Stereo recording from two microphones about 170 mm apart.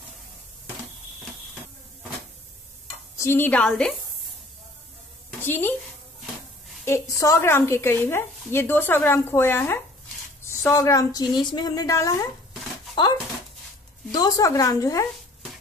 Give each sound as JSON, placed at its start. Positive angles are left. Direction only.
{"t": 3.2, "sound": "a woman's voice", "side_deg": 15}
{"t": 5.4, "sound": "a woman's voice", "side_deg": 10}
{"t": 6.8, "sound": "a woman's voice", "side_deg": 15}
{"t": 14.1, "sound": "a woman's voice", "side_deg": 20}